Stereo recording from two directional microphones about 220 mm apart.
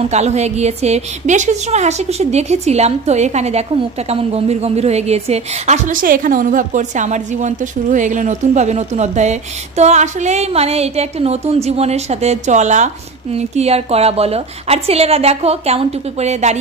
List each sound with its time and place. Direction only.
0.1 s a woman's voice: 30° right (ahead or behind)